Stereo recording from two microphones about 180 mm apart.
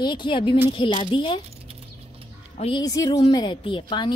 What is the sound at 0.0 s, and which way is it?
A woman's voice, 25° left (ahead or behind).